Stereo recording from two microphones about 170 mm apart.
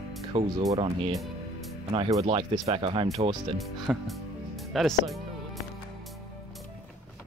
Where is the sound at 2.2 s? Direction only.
30° right (ahead or behind).